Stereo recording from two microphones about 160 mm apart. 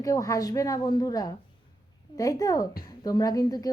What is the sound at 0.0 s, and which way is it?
A woman's voice, 20° left (ahead or behind).